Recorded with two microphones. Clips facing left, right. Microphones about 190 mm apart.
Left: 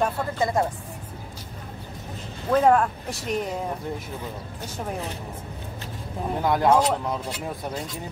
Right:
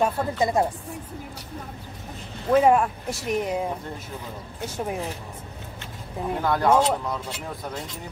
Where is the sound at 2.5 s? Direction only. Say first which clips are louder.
Right 1 dB; 10° right (ahead or behind).